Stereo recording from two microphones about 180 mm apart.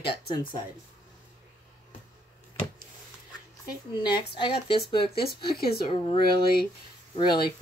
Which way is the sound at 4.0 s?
25° left (ahead or behind).